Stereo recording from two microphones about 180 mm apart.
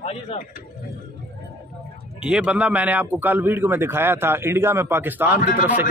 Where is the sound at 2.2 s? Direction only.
5° right (ahead or behind).